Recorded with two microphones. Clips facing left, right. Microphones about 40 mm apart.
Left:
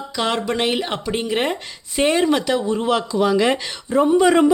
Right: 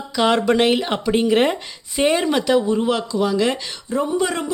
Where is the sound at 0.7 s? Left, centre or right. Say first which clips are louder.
Right 3 dB; centre.